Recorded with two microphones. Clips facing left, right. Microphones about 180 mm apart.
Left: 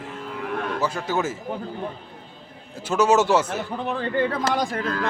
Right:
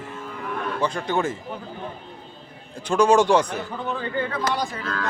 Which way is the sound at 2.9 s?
5° left (ahead or behind).